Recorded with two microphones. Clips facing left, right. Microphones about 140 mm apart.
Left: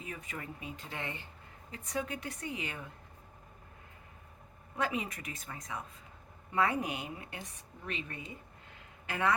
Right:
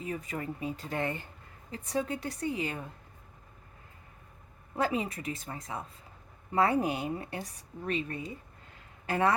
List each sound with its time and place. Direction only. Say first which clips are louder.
0.0 s a woman's voice: right 7 dB; 35° right (ahead or behind)
1.7 s a woman's voice: right 5 dB; 35° right (ahead or behind)
4.8 s a woman's voice: right 4 dB; 30° right (ahead or behind)